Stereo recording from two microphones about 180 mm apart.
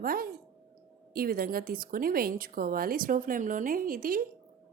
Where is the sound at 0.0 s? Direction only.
55° right (ahead or behind).